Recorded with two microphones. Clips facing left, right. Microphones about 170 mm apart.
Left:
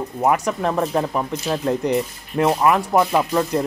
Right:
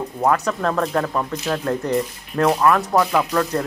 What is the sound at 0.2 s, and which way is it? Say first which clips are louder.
Speech: even; 15° left (ahead or behind).